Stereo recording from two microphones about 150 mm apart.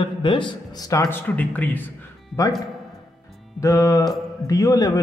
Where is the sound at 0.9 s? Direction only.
20° left (ahead or behind).